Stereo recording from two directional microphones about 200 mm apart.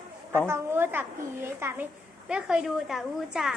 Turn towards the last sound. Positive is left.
turn(degrees=0)  # may be behind; listen again after turning